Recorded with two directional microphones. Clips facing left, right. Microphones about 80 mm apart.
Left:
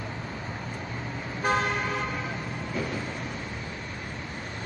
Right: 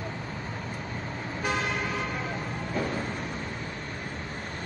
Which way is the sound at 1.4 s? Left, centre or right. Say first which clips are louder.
Left 4 dB; left.